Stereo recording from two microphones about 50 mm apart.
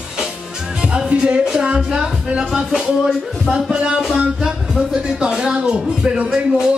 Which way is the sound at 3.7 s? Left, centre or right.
Centre.